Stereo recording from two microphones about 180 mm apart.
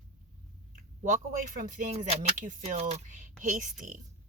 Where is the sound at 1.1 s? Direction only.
45° right (ahead or behind).